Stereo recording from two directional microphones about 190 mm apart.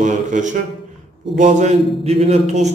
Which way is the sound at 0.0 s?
40° right (ahead or behind).